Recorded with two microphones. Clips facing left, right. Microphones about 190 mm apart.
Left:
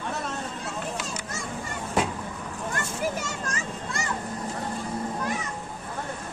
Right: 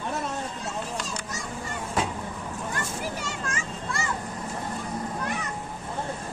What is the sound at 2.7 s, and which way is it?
Children playing, 45° left (ahead or behind).